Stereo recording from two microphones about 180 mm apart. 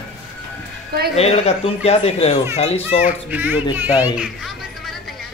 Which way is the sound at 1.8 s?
35° left (ahead or behind).